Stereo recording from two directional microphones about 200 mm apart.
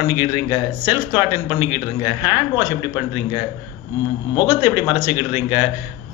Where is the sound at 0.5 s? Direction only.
25° left (ahead or behind).